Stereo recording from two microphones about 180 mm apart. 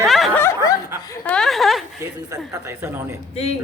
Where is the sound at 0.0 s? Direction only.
Centre (ahead or behind).